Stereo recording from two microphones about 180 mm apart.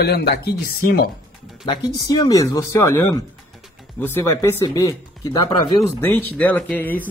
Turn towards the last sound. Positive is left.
turn(degrees=10)  # may be behind; listen again after turning